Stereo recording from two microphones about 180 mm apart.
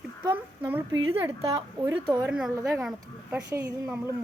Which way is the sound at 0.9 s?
15° right (ahead or behind).